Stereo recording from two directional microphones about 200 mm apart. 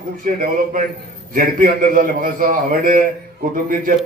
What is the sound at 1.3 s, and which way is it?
A man's voice, 40° right (ahead or behind).